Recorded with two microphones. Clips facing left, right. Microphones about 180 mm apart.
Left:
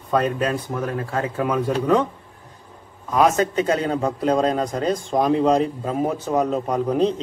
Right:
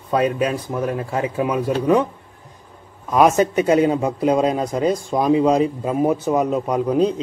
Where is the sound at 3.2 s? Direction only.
15° right (ahead or behind).